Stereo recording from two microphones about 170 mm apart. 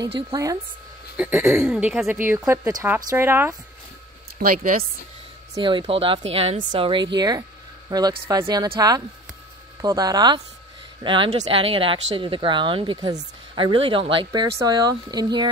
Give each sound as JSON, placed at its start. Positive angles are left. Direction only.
{"t": 0.0, "sound": "speech", "side_deg": -20}
{"t": 4.4, "sound": "speech", "side_deg": -55}
{"t": 5.5, "sound": "speech", "side_deg": -30}